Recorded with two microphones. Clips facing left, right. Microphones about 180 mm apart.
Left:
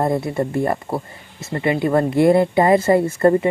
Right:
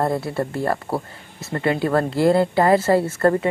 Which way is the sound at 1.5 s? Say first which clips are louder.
Left 2 dB; 10° left (ahead or behind).